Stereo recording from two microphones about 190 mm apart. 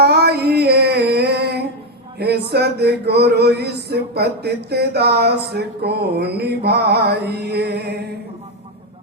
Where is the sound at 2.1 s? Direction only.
60° right (ahead or behind).